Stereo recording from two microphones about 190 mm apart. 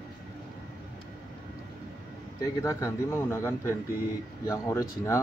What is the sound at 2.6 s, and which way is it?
Speech, 15° left (ahead or behind).